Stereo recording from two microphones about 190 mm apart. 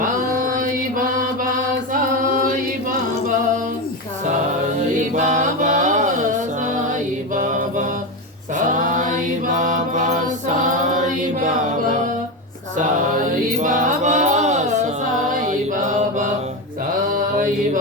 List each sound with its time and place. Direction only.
0.0 s mantra: 45° right (ahead or behind)
5.1 s chant: 40° right (ahead or behind)
7.3 s mantra: 40° right (ahead or behind)
9.5 s music: 40° right (ahead or behind)
10.9 s mantra: 40° right (ahead or behind)
13.6 s music: 40° right (ahead or behind)
15.3 s mantra: 40° right (ahead or behind)